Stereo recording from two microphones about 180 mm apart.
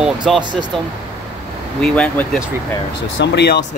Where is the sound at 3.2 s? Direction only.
70° left (ahead or behind).